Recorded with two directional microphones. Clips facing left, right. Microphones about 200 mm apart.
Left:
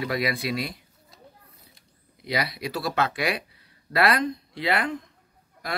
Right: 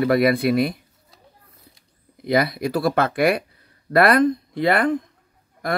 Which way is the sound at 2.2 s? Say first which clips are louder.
Right 9 dB; 50° right (ahead or behind).